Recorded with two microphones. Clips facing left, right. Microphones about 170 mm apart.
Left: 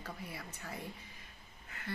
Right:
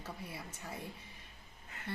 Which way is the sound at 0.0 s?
25° right (ahead or behind).